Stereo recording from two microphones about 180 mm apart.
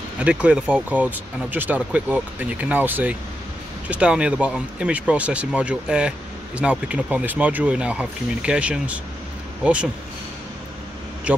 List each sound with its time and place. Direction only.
0.2 s speech: 5° right (ahead or behind)
11.3 s speech: 5° right (ahead or behind)